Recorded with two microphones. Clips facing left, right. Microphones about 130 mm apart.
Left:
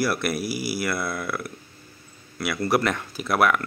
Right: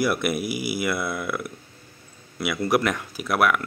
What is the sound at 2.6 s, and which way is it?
Speech, 10° right (ahead or behind).